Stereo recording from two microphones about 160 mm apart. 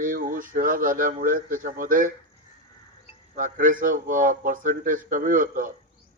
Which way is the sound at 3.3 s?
55° right (ahead or behind).